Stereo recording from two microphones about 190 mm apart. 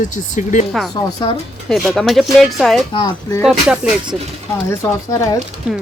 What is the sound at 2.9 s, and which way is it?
Speech, 20° left (ahead or behind).